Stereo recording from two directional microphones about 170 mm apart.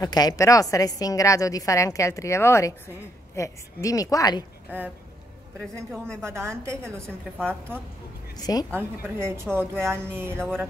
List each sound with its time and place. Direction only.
0.0 s a woman's voice: 25° left (ahead or behind)
4.6 s a woman's voice: 10° right (ahead or behind)
6.2 s speech: 15° right (ahead or behind)
8.4 s a woman's voice: 20° left (ahead or behind)
8.7 s speech: 15° right (ahead or behind)